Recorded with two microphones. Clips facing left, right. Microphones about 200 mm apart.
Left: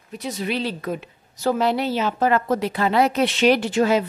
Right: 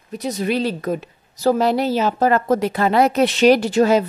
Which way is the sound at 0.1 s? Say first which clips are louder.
Right 5 dB; 40° right (ahead or behind).